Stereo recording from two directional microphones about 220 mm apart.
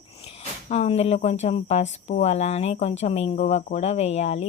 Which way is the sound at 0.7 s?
30° left (ahead or behind).